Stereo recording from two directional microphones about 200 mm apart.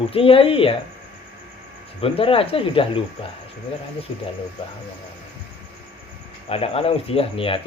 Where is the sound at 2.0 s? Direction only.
30° left (ahead or behind).